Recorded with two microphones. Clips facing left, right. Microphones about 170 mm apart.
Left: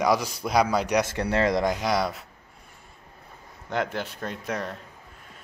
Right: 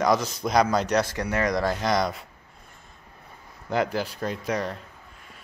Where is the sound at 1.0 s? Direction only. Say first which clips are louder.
Left 2 dB; 25° left (ahead or behind); by 2.2 s 5° left (ahead or behind).